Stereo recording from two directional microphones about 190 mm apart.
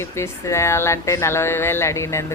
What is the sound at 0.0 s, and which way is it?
Speech, 15° left (ahead or behind).